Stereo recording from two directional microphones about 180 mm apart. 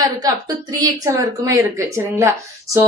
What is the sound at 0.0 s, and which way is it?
A woman's voice, 20° right (ahead or behind).